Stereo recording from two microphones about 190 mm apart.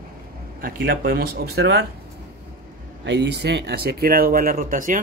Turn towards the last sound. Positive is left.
turn(degrees=-45)  # may be behind; listen again after turning